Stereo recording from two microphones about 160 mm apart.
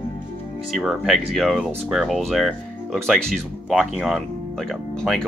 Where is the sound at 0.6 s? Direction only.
Centre (ahead or behind).